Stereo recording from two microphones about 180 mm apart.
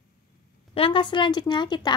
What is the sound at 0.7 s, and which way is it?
Speech, 30° left (ahead or behind).